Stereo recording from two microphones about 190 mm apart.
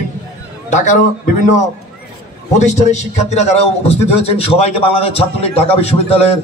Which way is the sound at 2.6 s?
40° left (ahead or behind).